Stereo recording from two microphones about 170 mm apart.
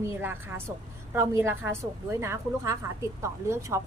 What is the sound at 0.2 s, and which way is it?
A woman's voice, 15° right (ahead or behind).